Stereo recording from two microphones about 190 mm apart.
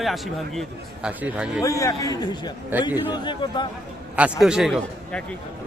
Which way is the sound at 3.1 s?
25° left (ahead or behind).